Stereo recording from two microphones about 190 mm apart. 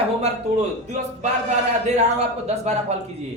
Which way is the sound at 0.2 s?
35° right (ahead or behind).